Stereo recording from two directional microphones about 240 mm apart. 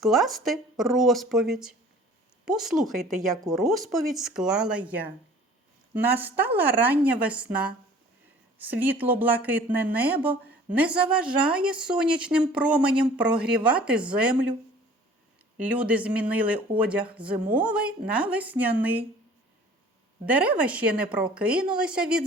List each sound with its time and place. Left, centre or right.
0.0 s a woman's voice: centre
15.5 s speech: centre
20.2 s speech: centre